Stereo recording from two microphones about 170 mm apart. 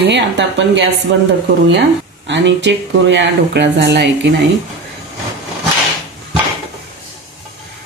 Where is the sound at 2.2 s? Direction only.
90° right.